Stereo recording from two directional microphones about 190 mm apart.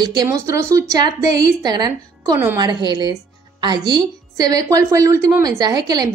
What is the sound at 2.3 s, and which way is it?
Speech, 10° right (ahead or behind).